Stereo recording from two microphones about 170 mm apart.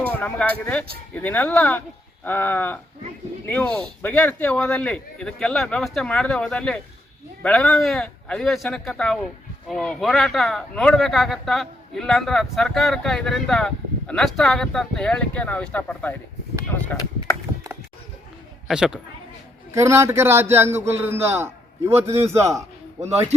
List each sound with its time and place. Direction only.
0.0 s speech: 10° left (ahead or behind)
18.7 s speech: 5° right (ahead or behind)
19.7 s a man's voice: 15° right (ahead or behind)